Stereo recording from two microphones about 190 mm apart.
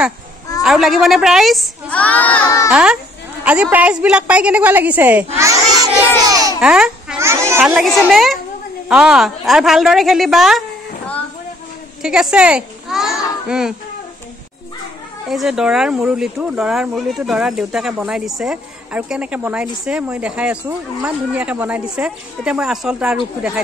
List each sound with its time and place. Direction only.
0.6 s speech: centre (ahead or behind)
2.7 s a woman's voice: 5° right (ahead or behind)
5.4 s a sound: 20° right (ahead or behind)
6.6 s babbling: 5° right (ahead or behind)
7.2 s a child's voice: 15° right (ahead or behind)
12.0 s a child's voice: 5° right (ahead or behind)
15.2 s speech: centre (ahead or behind)